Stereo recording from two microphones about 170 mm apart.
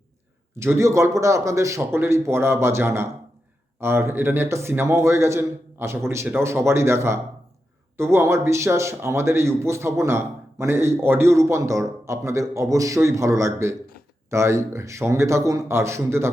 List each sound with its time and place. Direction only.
0.5 s a man's voice: 15° right (ahead or behind)